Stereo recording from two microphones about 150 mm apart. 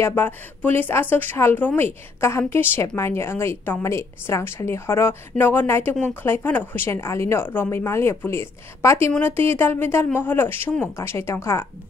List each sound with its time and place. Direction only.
0.0 s a woman's voice: 15° left (ahead or behind)